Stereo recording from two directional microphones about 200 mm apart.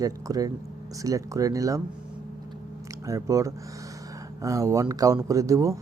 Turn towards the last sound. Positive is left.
turn(degrees=-15)  # may be behind; listen again after turning